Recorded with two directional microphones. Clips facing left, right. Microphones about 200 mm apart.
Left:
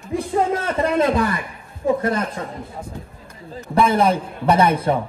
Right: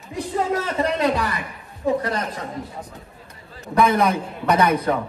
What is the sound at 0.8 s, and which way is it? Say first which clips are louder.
Speech: left 5 dB; 50° left (ahead or behind).